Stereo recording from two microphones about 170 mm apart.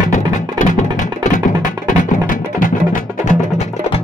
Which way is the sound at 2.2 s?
50° left (ahead or behind).